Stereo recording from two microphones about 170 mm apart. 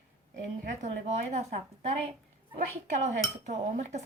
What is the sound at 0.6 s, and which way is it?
Speech, 45° right (ahead or behind).